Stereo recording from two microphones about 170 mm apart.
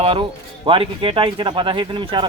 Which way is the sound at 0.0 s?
30° right (ahead or behind).